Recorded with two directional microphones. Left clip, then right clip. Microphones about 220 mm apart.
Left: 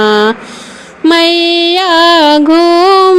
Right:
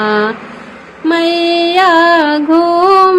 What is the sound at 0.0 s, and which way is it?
Speech, 35° left (ahead or behind).